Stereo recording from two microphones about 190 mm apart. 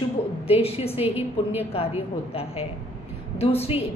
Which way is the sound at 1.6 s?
30° left (ahead or behind).